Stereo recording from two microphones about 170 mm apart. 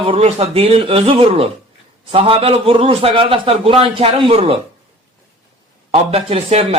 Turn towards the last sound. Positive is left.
turn(degrees=-35)  # may be behind; listen again after turning